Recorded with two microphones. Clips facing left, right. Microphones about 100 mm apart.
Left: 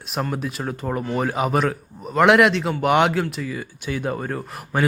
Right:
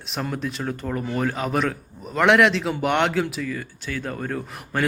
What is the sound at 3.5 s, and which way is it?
Speech, 15° left (ahead or behind).